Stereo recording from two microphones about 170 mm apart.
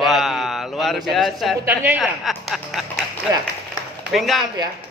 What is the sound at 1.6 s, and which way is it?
Speech, 10° right (ahead or behind).